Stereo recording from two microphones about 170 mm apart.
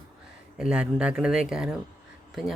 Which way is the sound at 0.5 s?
5° right (ahead or behind).